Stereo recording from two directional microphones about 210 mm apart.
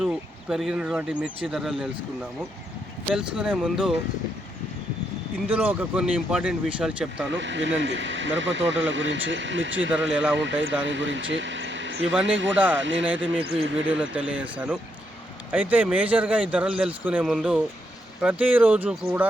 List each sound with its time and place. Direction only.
0.0 s a man's voice: 5° right (ahead or behind)
3.2 s a man's voice: 5° right (ahead or behind)
5.5 s a man's voice: 5° right (ahead or behind)
7.3 s speech: 60° right (ahead or behind)
10.1 s a man's voice: 5° right (ahead or behind)
10.3 s speech: 60° right (ahead or behind)
14.2 s a man's voice: 5° right (ahead or behind)